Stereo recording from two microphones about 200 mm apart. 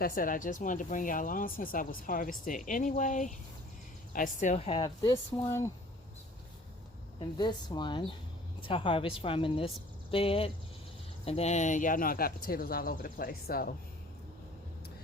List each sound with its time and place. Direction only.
0.2 s speech: 45° left (ahead or behind); by 5.7 s 15° left (ahead or behind)
7.2 s speech: 20° left (ahead or behind); by 13.7 s 50° left (ahead or behind)